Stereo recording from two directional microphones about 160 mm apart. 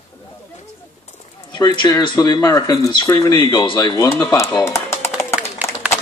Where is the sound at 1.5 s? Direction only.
25° left (ahead or behind).